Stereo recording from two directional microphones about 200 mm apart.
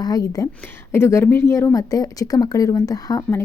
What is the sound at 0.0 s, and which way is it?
A woman's voice, 20° left (ahead or behind).